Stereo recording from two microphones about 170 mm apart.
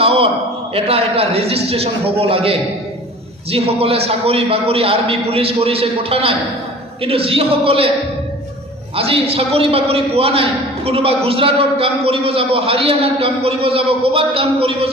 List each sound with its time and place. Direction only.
0.0 s a sound: 35° right (ahead or behind)
0.7 s a man's voice: 35° right (ahead or behind)
9.0 s a man's voice: 35° right (ahead or behind)